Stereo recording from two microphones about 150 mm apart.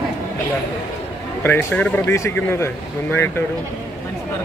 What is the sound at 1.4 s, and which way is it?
Speech, 10° left (ahead or behind).